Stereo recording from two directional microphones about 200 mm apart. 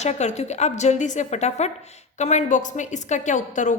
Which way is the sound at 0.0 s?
35° left (ahead or behind).